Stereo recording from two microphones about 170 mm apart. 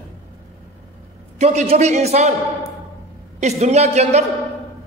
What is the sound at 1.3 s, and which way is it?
Speech, 40° right (ahead or behind).